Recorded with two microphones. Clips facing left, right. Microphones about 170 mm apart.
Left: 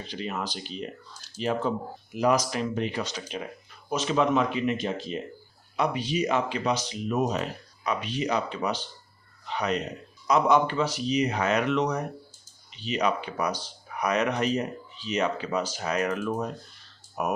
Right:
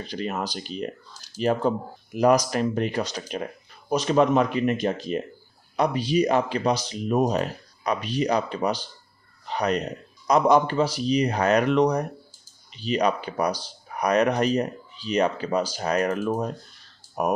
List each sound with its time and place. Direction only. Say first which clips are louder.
0.1 s a man's voice: right 3 dB; 45° right (ahead or behind)